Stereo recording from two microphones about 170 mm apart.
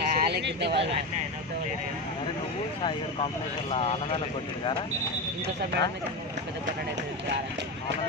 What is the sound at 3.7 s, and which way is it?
Speech, 35° left (ahead or behind).